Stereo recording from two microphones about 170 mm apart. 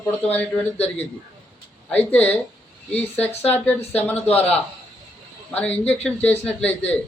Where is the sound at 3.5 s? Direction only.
10° left (ahead or behind).